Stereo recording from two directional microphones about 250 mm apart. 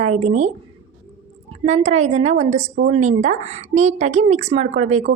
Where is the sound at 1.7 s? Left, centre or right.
Right.